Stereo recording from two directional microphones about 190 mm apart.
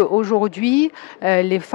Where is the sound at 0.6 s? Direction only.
10° left (ahead or behind).